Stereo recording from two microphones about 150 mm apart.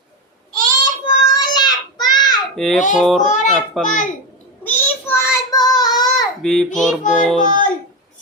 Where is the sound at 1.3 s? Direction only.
25° left (ahead or behind).